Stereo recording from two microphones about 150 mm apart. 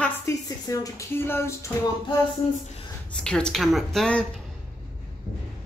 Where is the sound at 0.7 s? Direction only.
20° left (ahead or behind).